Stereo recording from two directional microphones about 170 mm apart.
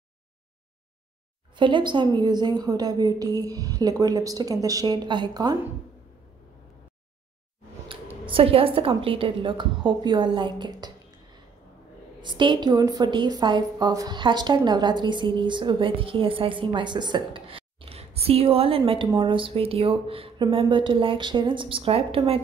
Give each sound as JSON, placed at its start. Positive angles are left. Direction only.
{"t": 1.5, "sound": "a woman's voice", "side_deg": -30}
{"t": 8.3, "sound": "a woman's voice", "side_deg": -30}
{"t": 12.2, "sound": "a woman's voice", "side_deg": -25}